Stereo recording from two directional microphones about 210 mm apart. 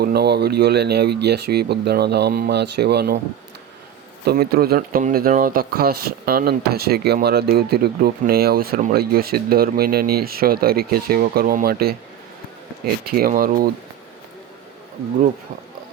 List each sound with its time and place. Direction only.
0.0 s speech: 50° right (ahead or behind)
4.3 s speech: 50° right (ahead or behind)